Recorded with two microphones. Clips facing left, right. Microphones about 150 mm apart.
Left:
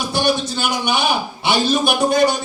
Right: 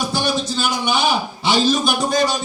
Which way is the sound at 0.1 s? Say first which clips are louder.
Left 2 dB; 65° left (ahead or behind).